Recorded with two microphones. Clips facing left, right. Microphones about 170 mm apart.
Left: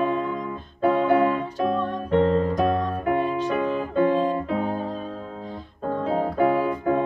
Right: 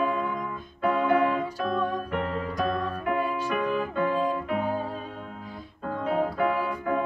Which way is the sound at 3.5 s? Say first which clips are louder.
Left 4 dB; 30° left (ahead or behind).